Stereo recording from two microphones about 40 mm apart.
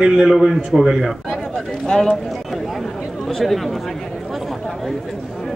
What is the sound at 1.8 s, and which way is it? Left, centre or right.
Speech, centre.